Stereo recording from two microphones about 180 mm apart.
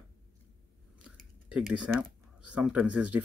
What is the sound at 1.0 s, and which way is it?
Speech, centre (ahead or behind).